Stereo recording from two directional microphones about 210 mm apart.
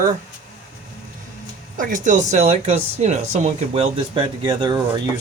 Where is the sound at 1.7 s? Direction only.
40° right (ahead or behind); by 5.0 s 20° right (ahead or behind).